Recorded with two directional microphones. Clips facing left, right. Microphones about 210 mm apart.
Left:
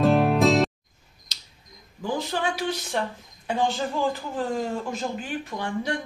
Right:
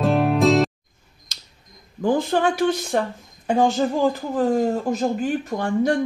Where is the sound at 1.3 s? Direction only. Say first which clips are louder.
Right 2 dB; 50° right (ahead or behind).